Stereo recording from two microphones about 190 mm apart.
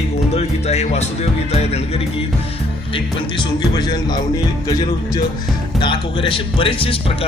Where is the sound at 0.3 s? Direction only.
35° left (ahead or behind).